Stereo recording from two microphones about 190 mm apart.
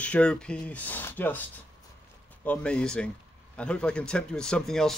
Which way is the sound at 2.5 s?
5° left (ahead or behind).